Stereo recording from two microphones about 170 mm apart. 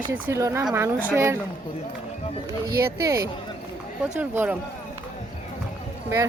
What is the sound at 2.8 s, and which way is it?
A woman's voice, 20° right (ahead or behind).